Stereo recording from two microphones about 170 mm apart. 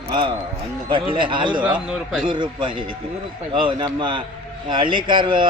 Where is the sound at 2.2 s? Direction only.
30° right (ahead or behind).